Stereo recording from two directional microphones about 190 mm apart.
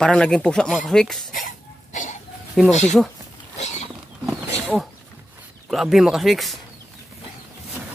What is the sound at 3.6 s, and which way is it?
Wild animals, 35° left (ahead or behind).